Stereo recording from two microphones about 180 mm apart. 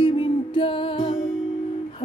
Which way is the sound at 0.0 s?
30° left (ahead or behind).